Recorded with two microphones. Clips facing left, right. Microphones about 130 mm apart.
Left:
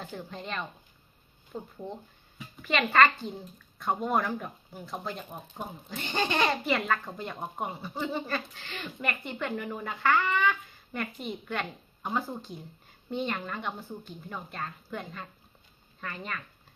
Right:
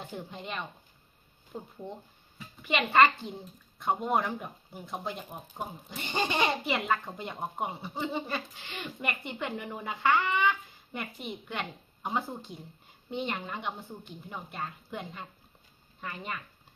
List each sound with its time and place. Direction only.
0.0 s speech: 20° right (ahead or behind)
1.5 s speech: 5° right (ahead or behind)